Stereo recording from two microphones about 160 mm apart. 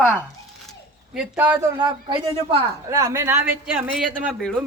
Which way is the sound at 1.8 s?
30° right (ahead or behind).